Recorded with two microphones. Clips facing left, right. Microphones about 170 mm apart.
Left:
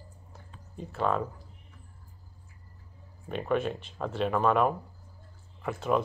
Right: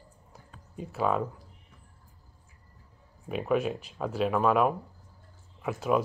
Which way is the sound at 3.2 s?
5° right (ahead or behind).